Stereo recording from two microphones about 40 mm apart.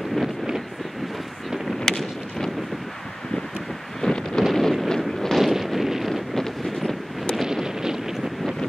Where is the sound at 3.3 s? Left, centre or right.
Centre.